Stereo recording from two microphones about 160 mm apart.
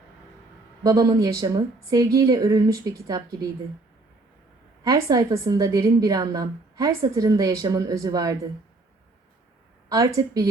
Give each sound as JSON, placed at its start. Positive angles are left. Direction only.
{"t": 0.9, "sound": "a woman's voice", "side_deg": -20}
{"t": 4.8, "sound": "a woman's voice", "side_deg": -20}
{"t": 9.9, "sound": "a woman's voice", "side_deg": -20}